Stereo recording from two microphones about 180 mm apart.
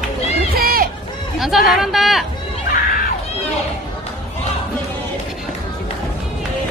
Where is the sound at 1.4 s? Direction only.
Centre (ahead or behind).